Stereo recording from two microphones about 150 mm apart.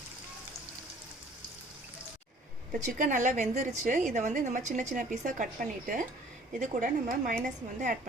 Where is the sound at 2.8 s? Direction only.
55° right (ahead or behind).